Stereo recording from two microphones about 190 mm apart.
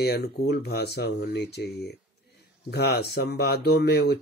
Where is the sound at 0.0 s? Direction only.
60° left (ahead or behind).